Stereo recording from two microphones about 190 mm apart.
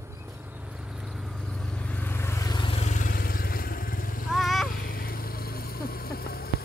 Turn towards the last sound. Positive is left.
turn(degrees=55)  # may be behind; listen again after turning